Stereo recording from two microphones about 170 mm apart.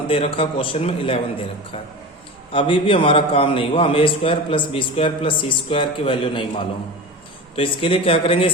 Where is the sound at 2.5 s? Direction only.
30° left (ahead or behind).